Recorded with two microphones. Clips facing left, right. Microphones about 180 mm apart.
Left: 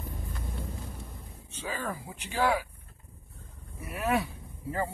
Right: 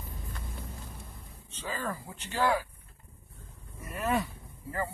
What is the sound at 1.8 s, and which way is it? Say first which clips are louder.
Speech: even; 10° left (ahead or behind).